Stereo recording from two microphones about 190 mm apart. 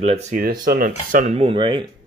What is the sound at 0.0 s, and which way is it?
Speech, 35° right (ahead or behind).